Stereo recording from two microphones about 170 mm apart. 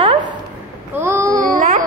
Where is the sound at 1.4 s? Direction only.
50° right (ahead or behind).